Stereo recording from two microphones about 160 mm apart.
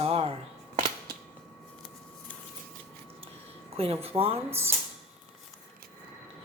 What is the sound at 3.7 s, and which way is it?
Speech, 35° right (ahead or behind).